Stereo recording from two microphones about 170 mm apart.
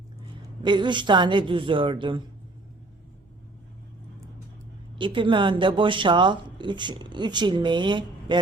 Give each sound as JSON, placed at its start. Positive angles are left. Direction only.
{"t": 0.6, "sound": "speech", "side_deg": -25}
{"t": 4.9, "sound": "speech", "side_deg": -30}